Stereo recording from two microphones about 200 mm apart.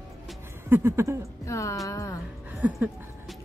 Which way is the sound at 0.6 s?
10° right (ahead or behind).